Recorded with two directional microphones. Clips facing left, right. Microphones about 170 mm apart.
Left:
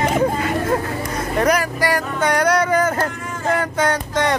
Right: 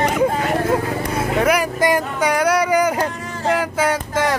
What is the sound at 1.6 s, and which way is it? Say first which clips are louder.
Speech: right 3 dB; 20° right (ahead or behind).